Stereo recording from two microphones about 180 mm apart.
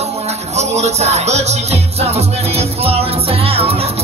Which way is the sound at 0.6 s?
40° right (ahead or behind).